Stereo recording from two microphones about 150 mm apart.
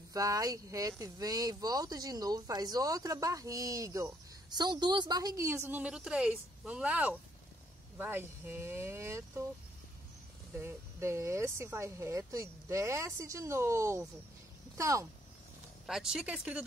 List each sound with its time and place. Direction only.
0.1 s speech: 25° right (ahead or behind)
10.5 s speech: 15° right (ahead or behind)
15.9 s speech: 5° right (ahead or behind)